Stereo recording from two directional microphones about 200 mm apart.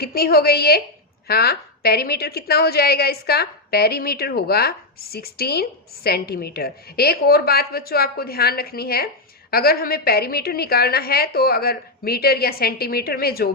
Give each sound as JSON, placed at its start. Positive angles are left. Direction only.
{"t": 0.0, "sound": "a woman's voice", "side_deg": 50}